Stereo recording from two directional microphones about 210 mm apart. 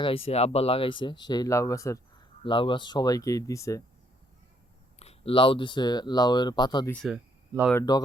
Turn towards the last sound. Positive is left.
turn(degrees=20)  # may be behind; listen again after turning